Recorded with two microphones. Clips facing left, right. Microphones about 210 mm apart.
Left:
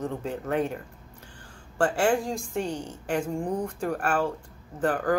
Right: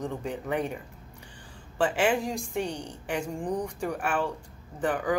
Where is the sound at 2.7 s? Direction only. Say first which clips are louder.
Left 3 dB; 15° right (ahead or behind).